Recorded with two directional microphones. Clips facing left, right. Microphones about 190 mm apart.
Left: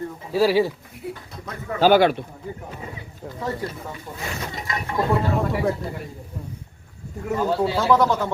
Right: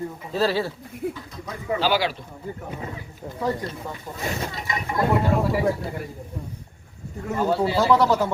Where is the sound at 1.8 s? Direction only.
55° left (ahead or behind).